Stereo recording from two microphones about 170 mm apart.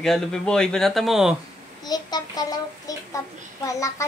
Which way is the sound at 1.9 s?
25° left (ahead or behind).